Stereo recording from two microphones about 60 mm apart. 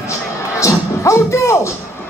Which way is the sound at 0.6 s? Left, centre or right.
Left.